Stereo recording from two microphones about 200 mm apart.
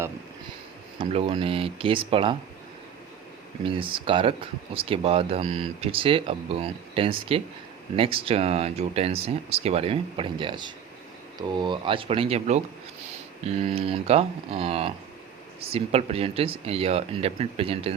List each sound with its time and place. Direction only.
0.9 s speech: 30° right (ahead or behind)
3.6 s speech: 25° right (ahead or behind)